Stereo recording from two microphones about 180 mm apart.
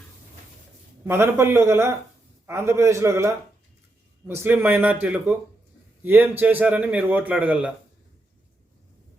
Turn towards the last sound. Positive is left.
turn(degrees=-5)  # may be behind; listen again after turning